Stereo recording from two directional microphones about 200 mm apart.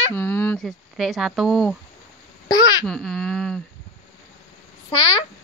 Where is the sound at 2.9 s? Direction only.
Centre (ahead or behind).